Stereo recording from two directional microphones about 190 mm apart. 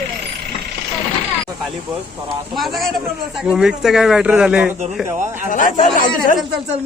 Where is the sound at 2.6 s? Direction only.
Centre (ahead or behind).